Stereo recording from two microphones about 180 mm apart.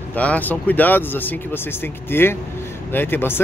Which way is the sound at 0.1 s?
10° left (ahead or behind).